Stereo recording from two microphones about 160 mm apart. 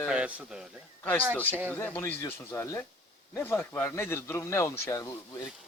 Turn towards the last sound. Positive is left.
turn(degrees=20)  # may be behind; listen again after turning